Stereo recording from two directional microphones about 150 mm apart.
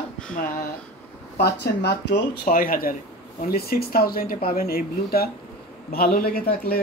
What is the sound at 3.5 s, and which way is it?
Speech, 90° left.